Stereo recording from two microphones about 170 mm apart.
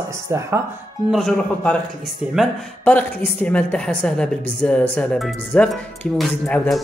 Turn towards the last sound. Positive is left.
turn(degrees=10)  # may be behind; listen again after turning